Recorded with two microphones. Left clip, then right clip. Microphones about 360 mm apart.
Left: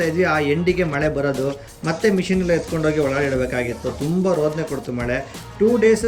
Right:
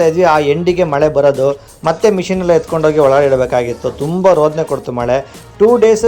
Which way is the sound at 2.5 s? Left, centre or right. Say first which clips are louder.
Right 11 dB; right.